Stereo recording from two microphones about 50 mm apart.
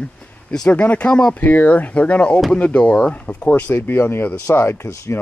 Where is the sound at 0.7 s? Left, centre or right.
Left.